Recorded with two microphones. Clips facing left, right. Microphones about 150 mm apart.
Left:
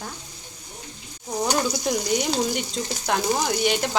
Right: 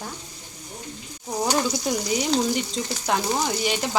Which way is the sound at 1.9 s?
Centre (ahead or behind).